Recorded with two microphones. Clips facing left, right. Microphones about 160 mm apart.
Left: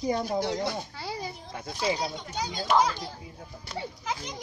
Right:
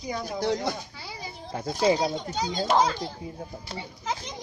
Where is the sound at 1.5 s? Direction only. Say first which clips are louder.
Right 7 dB; 40° right (ahead or behind).